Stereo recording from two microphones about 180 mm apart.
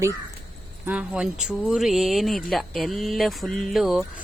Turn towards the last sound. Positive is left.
turn(degrees=0)  # may be behind; listen again after turning